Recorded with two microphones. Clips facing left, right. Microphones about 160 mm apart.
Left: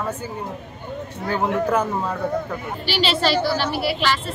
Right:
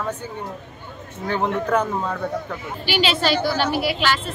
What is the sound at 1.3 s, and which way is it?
A man's voice, 5° left (ahead or behind).